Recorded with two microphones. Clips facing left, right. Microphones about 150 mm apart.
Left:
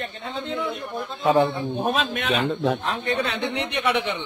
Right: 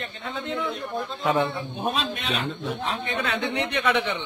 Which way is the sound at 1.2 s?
30° left (ahead or behind).